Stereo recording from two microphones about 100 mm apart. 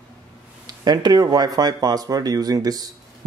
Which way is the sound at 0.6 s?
45° right (ahead or behind).